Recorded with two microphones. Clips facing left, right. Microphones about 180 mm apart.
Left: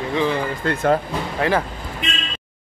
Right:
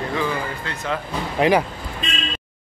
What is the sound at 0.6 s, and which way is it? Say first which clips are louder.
Speech: left 9 dB; 55° left (ahead or behind).